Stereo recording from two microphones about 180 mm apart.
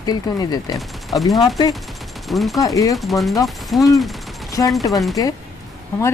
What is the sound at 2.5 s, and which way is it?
Speech, 20° left (ahead or behind).